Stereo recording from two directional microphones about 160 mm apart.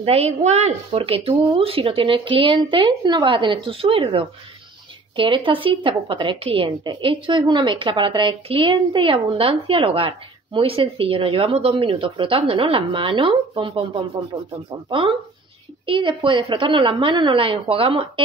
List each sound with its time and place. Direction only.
0.0 s speech: 40° right (ahead or behind)